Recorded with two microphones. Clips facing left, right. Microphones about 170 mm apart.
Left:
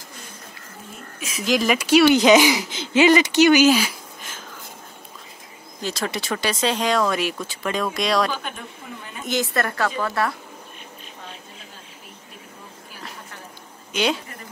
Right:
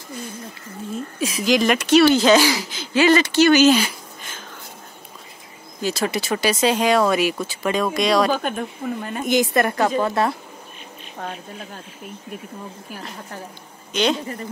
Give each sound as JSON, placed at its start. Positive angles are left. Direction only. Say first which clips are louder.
{"t": 1.4, "sound": "speech", "louder": "right 2 dB", "side_deg": 0}
{"t": 5.8, "sound": "speech", "louder": "right 4 dB", "side_deg": -5}
{"t": 8.3, "sound": "speech", "louder": "right 8 dB", "side_deg": -50}
{"t": 9.2, "sound": "a woman's voice", "louder": "right 5 dB", "side_deg": -15}
{"t": 11.2, "sound": "a woman's voice", "louder": "right 10 dB", "side_deg": -60}
{"t": 13.9, "sound": "speech", "louder": "right 2 dB", "side_deg": 10}